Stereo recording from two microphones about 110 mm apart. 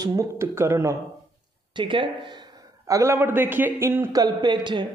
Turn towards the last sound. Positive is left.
turn(degrees=-45)  # may be behind; listen again after turning